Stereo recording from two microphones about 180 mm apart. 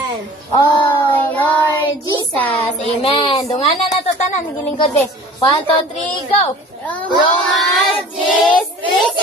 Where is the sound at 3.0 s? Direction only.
30° left (ahead or behind).